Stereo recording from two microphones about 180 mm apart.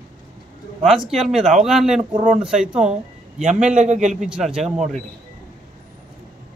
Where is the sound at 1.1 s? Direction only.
Centre (ahead or behind).